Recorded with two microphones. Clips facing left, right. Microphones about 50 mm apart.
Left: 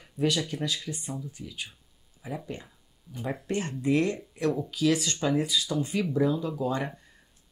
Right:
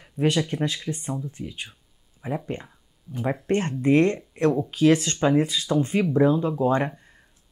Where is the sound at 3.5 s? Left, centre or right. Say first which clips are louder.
Right 6 dB; right.